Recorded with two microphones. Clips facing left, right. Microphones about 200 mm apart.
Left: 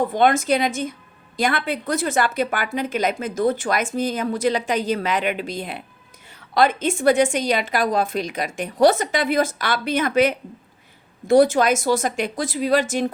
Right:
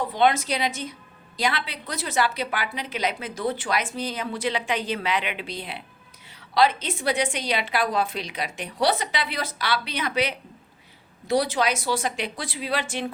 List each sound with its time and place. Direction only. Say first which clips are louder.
0.0 s a woman's voice: left 4 dB; 50° left (ahead or behind)